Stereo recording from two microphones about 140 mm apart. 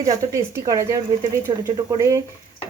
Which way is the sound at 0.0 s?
25° right (ahead or behind).